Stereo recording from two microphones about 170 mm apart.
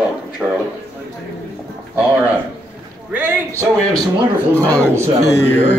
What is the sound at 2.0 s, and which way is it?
A man's voice, 5° right (ahead or behind).